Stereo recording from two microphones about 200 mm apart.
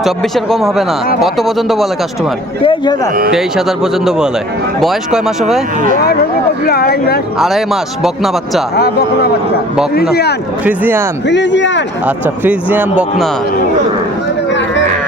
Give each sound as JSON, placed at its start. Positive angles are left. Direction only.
{"t": 0.0, "sound": "speech", "side_deg": 0}
{"t": 2.6, "sound": "a man's voice", "side_deg": 20}
{"t": 3.3, "sound": "speech", "side_deg": 0}
{"t": 6.7, "sound": "speech", "side_deg": 50}
{"t": 7.3, "sound": "speech", "side_deg": 0}
{"t": 8.7, "sound": "speech", "side_deg": 50}
{"t": 10.7, "sound": "speech", "side_deg": -10}
{"t": 11.3, "sound": "speech", "side_deg": 60}
{"t": 12.0, "sound": "speech", "side_deg": -10}